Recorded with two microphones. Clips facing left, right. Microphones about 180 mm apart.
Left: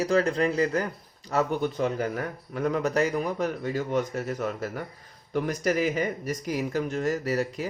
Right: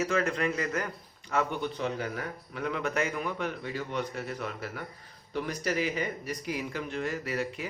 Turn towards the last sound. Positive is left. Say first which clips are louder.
# left 5 dB
turn(degrees=40)  # may be behind; listen again after turning